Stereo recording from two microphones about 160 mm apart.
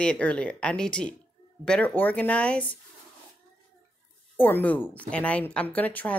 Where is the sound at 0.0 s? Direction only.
5° left (ahead or behind).